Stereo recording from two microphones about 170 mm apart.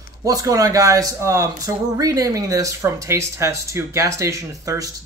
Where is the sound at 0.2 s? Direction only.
20° right (ahead or behind).